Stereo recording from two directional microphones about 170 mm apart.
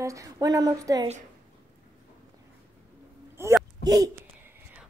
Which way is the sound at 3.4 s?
15° right (ahead or behind).